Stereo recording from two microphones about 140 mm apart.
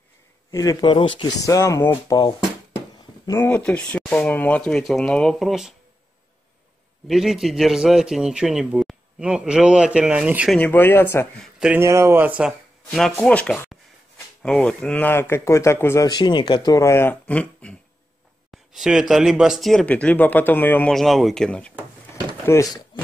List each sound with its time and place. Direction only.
0.5 s speech: 25° left (ahead or behind)
1.4 s speech: 25° left (ahead or behind)
3.3 s speech: 15° left (ahead or behind); by 5.8 s centre (ahead or behind)
7.1 s a man's voice: centre (ahead or behind)
10.5 s speech: 10° left (ahead or behind)
11.4 s speech: 5° right (ahead or behind)
11.8 s speech: 20° right (ahead or behind)
12.9 s a man's voice: centre (ahead or behind); by 16.1 s 20° left (ahead or behind)
16.1 s speech: 30° left (ahead or behind); by 17.7 s 10° left (ahead or behind)
18.5 s a man's voice: centre (ahead or behind)
20.9 s a man's voice: centre (ahead or behind)
22.5 s speech: 25° left (ahead or behind)